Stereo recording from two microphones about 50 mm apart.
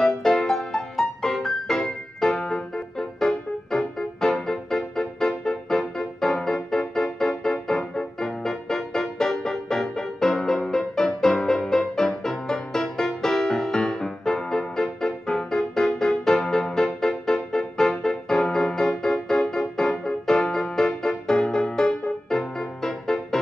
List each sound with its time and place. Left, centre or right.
0.0 s music: centre